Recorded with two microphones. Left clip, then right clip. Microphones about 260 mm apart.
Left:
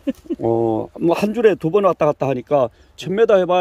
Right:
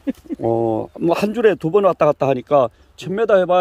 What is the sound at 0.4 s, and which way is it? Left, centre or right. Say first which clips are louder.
Speech: even; centre.